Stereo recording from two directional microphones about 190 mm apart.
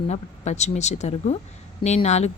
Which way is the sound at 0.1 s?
35° left (ahead or behind).